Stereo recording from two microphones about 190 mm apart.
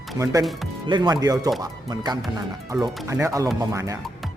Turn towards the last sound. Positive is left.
turn(degrees=-15)  # may be behind; listen again after turning